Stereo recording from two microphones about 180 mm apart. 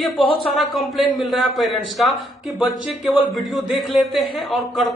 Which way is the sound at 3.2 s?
Centre (ahead or behind).